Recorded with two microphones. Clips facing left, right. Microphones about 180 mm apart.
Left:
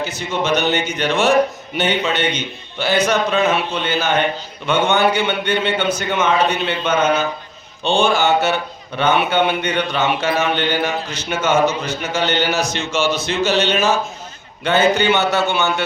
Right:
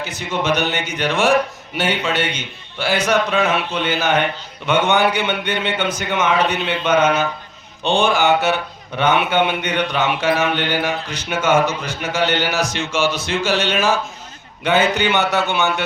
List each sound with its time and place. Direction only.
0.0 s speech: 15° right (ahead or behind)